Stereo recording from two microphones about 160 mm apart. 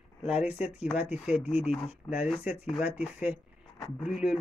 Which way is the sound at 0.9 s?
5° right (ahead or behind).